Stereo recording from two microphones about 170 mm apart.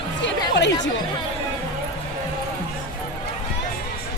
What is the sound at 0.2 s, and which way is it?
Chatter, 90° left.